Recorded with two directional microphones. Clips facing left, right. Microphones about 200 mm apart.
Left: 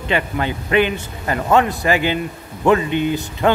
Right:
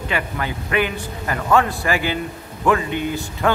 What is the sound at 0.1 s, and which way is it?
Speech, 25° left (ahead or behind).